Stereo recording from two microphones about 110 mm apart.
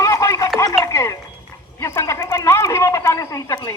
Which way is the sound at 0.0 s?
30° left (ahead or behind).